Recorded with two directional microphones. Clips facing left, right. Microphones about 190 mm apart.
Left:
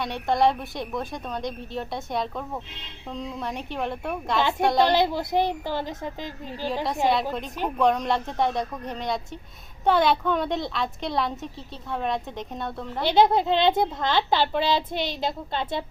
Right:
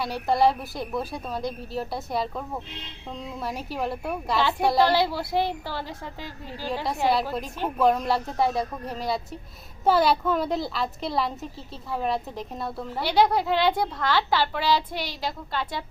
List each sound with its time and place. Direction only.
0.0 s a woman's voice: 5° right (ahead or behind)
4.4 s speech: 20° left (ahead or behind)
7.8 s a woman's voice: 5° right (ahead or behind)
13.0 s speech: 25° left (ahead or behind)